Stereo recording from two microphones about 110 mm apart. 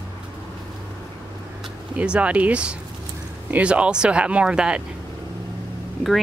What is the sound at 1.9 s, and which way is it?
Speech, 10° right (ahead or behind).